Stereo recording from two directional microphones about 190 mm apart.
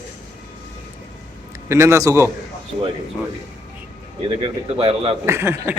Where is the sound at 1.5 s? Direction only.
15° right (ahead or behind).